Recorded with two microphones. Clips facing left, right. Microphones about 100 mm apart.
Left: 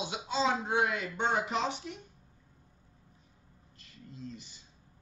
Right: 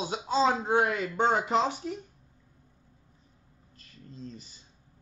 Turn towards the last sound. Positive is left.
turn(degrees=-35)  # may be behind; listen again after turning